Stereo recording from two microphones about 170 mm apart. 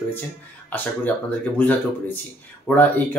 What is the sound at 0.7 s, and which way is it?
Speech, 10° left (ahead or behind).